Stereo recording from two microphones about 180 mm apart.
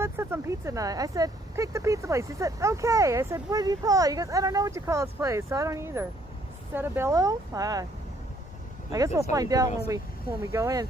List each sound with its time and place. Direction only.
0.0 s speech: 15° right (ahead or behind)
8.9 s speech: 20° right (ahead or behind)